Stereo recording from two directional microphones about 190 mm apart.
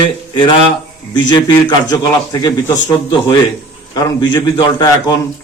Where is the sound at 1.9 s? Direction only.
20° left (ahead or behind).